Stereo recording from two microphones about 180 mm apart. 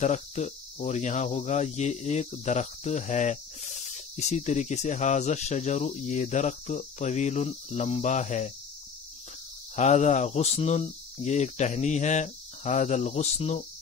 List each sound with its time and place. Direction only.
0.0 s speech: 40° left (ahead or behind)
9.8 s speech: 40° left (ahead or behind)